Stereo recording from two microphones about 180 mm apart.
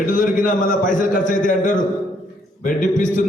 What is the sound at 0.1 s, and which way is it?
A man's voice, 45° left (ahead or behind).